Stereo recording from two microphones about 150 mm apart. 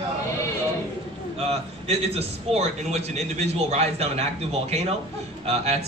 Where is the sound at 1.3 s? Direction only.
45° right (ahead or behind).